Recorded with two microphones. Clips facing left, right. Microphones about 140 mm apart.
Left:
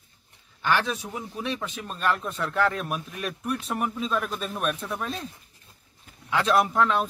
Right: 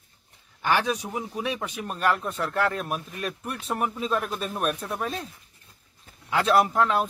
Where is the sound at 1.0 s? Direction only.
15° right (ahead or behind).